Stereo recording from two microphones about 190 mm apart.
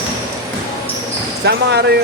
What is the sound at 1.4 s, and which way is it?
Speech, 60° right (ahead or behind).